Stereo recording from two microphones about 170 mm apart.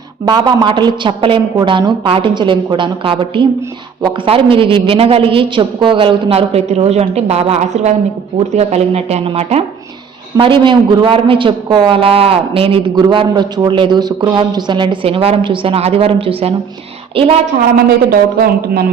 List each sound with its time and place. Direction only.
0.3 s a woman's voice: 25° right (ahead or behind)
18.1 s a man's voice: 65° right (ahead or behind)